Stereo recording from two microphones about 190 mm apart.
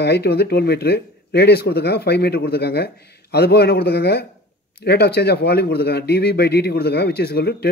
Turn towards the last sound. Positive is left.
turn(degrees=55)  # may be behind; listen again after turning